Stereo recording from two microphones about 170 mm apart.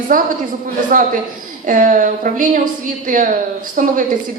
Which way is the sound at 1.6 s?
50° right (ahead or behind).